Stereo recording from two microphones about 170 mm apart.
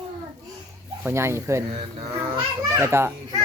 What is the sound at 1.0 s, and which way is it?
Speech, 15° right (ahead or behind).